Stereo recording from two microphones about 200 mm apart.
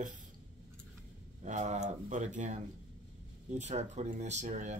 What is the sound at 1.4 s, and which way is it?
Speech, 40° right (ahead or behind).